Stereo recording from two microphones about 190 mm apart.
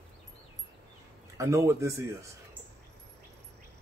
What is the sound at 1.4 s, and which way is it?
Speech, 15° right (ahead or behind).